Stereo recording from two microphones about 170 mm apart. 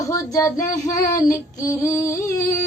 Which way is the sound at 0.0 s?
20° left (ahead or behind).